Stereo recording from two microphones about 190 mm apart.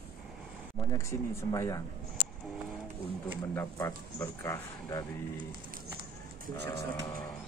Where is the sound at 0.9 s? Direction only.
15° left (ahead or behind).